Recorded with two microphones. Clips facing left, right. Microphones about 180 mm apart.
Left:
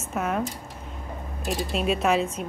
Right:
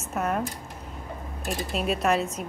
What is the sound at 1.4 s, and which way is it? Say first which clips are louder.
Speech: left 2 dB; centre (ahead or behind).